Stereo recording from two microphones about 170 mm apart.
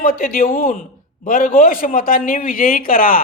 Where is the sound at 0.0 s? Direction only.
55° left (ahead or behind).